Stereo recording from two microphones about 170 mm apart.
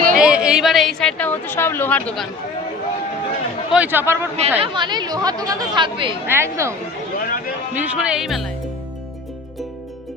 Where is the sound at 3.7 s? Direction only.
10° right (ahead or behind).